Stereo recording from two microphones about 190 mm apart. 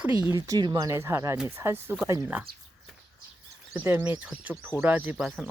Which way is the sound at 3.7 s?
10° right (ahead or behind).